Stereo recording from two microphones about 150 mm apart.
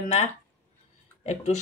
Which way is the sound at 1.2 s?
50° left (ahead or behind).